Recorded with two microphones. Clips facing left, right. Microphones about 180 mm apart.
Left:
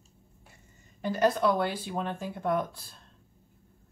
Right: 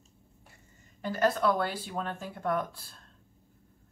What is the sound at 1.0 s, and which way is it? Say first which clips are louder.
Speech: left 2 dB; 20° left (ahead or behind).